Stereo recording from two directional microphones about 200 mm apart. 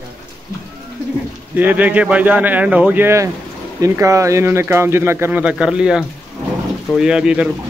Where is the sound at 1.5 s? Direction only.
10° right (ahead or behind).